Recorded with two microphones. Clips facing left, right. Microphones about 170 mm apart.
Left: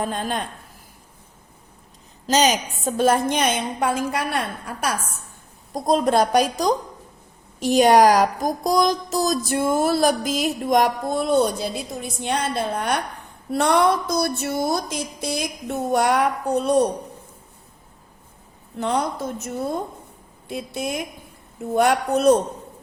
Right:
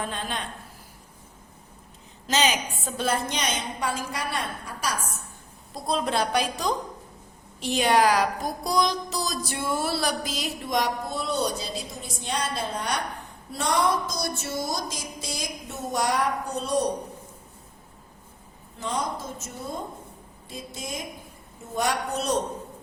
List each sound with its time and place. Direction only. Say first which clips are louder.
0.0 s a woman's voice: left 6 dB; 45° left (ahead or behind)
2.2 s music: left 6 dB; 40° left (ahead or behind); by 4.9 s 60° left (ahead or behind)
5.7 s a woman's voice: left 8 dB; 45° left (ahead or behind)
12.2 s music: left 5 dB; 60° left (ahead or behind)
18.8 s music: left 7 dB; 65° left (ahead or behind)